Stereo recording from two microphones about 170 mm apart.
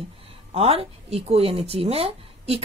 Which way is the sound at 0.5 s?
35° right (ahead or behind).